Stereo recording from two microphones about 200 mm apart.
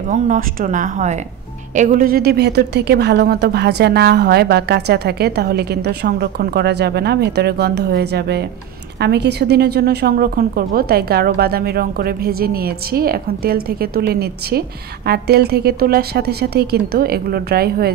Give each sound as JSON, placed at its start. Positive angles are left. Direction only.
{"t": 0.1, "sound": "speech", "side_deg": -40}